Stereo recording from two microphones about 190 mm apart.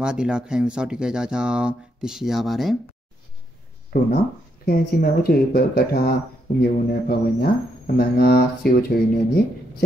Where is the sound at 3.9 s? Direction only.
50° left (ahead or behind).